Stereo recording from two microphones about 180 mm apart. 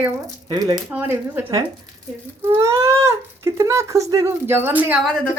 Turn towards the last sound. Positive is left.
turn(degrees=5)  # may be behind; listen again after turning